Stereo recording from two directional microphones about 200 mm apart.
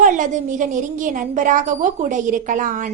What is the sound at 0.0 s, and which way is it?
A woman's voice, 40° right (ahead or behind).